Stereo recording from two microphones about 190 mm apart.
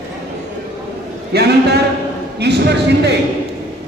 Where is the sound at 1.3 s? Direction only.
60° right (ahead or behind).